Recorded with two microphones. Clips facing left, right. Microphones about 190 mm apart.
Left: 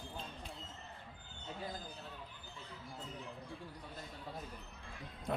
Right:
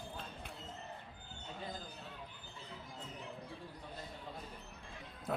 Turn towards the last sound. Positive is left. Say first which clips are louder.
# even
turn(degrees=0)  # may be behind; listen again after turning